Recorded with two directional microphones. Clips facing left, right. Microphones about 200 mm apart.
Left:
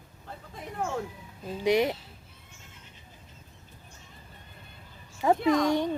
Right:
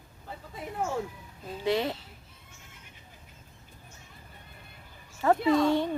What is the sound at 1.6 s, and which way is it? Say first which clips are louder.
Speech: left 4 dB; 15° left (ahead or behind).